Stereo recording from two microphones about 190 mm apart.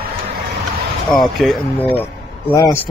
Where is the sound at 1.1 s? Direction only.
Centre (ahead or behind).